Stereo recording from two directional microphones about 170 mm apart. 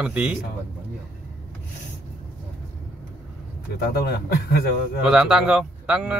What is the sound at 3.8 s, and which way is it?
Speech, 70° left (ahead or behind).